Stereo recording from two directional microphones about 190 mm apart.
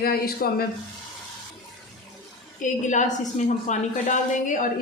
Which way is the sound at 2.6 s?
40° left (ahead or behind).